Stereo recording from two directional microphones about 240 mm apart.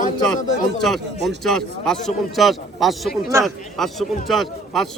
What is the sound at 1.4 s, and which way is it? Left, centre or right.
A man's voice, centre.